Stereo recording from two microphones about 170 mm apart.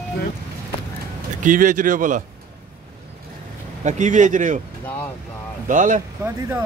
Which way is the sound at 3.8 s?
45° right (ahead or behind).